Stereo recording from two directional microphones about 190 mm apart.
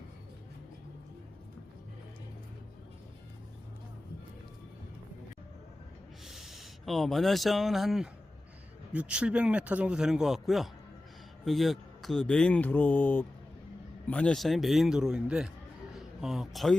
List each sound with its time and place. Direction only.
6.2 s a man's voice: centre (ahead or behind)